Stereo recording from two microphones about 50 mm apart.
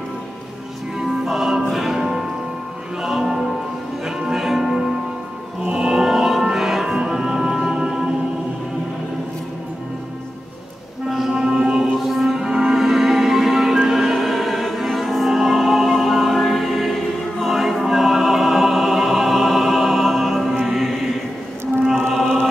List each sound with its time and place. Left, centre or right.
0.9 s music: centre
11.1 s music: centre
12.0 s music: centre
12.4 s music: centre
22.1 s a sound: centre